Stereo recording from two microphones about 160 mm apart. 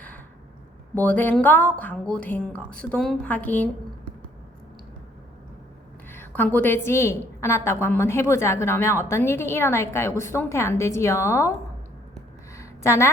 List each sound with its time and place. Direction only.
0.9 s a woman's voice: 10° left (ahead or behind)
6.1 s a woman's voice: 15° left (ahead or behind)
12.5 s a sound: 15° left (ahead or behind)